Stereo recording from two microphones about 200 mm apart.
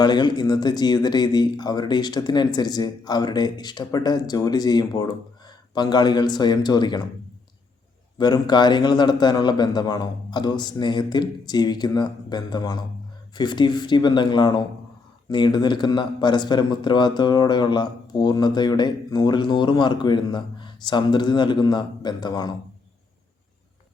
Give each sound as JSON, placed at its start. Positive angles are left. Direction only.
{"t": 0.0, "sound": "a man's voice", "side_deg": 20}
{"t": 8.2, "sound": "a man's voice", "side_deg": 20}